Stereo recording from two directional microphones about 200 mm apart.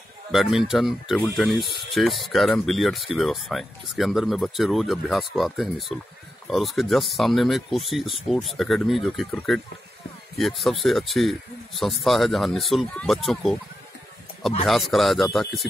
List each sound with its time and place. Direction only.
0.3 s speech: centre (ahead or behind)
14.7 s speech: centre (ahead or behind)